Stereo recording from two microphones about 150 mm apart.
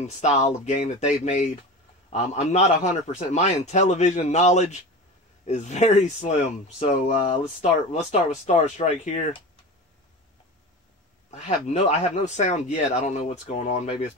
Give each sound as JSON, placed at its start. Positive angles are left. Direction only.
{"t": 0.0, "sound": "a man's voice", "side_deg": 45}
{"t": 11.2, "sound": "a man's voice", "side_deg": 50}